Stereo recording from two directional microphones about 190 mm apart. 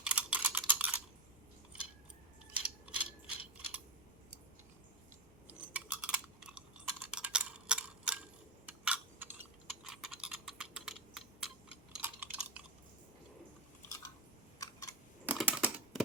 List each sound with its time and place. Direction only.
0.0 s computer keyboard: 5° right (ahead or behind)
2.6 s mechanisms: 5° right (ahead or behind)
5.5 s a sound: 5° right (ahead or behind)
7.1 s tick-tock: 5° right (ahead or behind)
11.9 s typing: 10° right (ahead or behind)
14.6 s a sound: 20° left (ahead or behind)
15.3 s computer keyboard: 5° right (ahead or behind)